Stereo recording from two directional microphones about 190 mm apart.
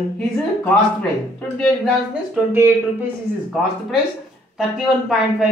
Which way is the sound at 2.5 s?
15° right (ahead or behind).